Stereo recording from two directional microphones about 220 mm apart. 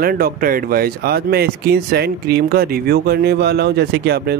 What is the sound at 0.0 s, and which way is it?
Speech, 45° right (ahead or behind).